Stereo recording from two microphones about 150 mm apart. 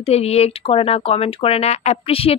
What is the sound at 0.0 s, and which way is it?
Speech, 45° left (ahead or behind).